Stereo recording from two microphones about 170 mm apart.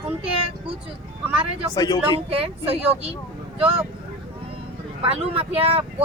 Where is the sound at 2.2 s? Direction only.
35° right (ahead or behind).